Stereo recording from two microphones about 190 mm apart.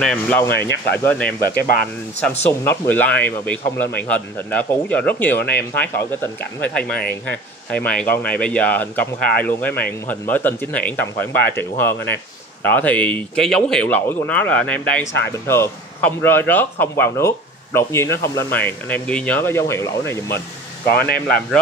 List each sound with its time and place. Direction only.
0.0 s speech: 10° left (ahead or behind)
0.5 s speech: 60° left (ahead or behind)
0.9 s speech: 10° left (ahead or behind)
1.5 s speech: 50° left (ahead or behind)
2.6 s speech: 10° left (ahead or behind)
20.9 s speech: 55° left (ahead or behind)